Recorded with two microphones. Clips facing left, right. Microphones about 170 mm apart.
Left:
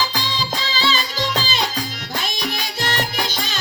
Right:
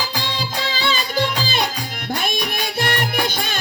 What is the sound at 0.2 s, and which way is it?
Music, 55° right (ahead or behind).